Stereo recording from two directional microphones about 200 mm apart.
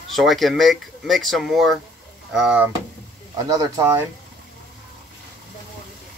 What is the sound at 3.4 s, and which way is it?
Speech, 20° right (ahead or behind).